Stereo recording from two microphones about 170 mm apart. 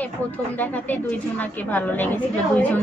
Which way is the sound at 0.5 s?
10° left (ahead or behind).